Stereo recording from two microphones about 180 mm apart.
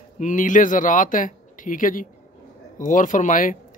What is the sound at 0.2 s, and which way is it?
Speech, 45° left (ahead or behind).